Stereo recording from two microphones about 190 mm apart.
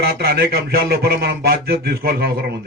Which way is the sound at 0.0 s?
55° right (ahead or behind).